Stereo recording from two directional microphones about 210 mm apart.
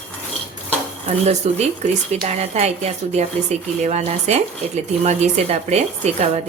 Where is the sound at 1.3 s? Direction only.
30° right (ahead or behind).